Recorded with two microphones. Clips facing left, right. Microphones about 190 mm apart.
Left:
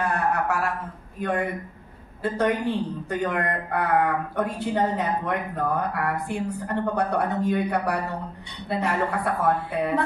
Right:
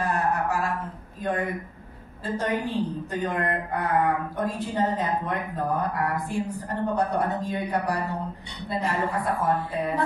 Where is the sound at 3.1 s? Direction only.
65° left (ahead or behind).